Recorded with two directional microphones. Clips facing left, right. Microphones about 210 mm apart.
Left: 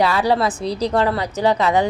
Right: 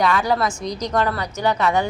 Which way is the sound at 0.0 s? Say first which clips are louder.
Left 2 dB; 30° left (ahead or behind).